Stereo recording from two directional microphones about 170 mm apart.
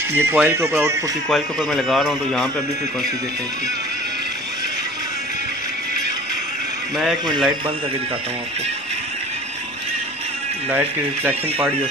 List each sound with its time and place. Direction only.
0.1 s speech: 15° right (ahead or behind)
1.3 s speech: centre (ahead or behind)
7.2 s a man's voice: 25° right (ahead or behind)
10.7 s speech: 10° right (ahead or behind)